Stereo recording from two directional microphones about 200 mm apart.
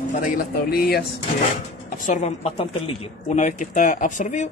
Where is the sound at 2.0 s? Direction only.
35° left (ahead or behind).